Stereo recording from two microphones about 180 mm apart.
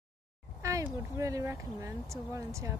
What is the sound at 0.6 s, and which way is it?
Speech, 15° right (ahead or behind).